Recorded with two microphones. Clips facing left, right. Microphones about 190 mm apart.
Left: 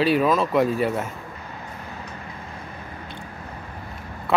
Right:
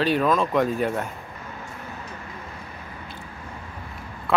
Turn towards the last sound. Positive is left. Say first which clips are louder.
# left 1 dB
turn(degrees=0)  # may be behind; listen again after turning